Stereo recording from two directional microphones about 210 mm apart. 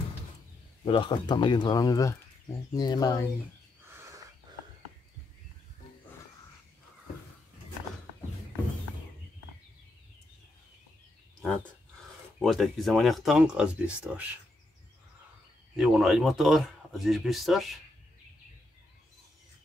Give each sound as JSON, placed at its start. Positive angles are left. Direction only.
{"t": 0.8, "sound": "speech", "side_deg": 25}
{"t": 3.9, "sound": "wild animals", "side_deg": -15}
{"t": 12.4, "sound": "speech", "side_deg": 0}
{"t": 15.7, "sound": "speech", "side_deg": -5}